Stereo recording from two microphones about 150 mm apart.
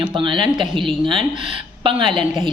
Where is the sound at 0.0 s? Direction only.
35° right (ahead or behind).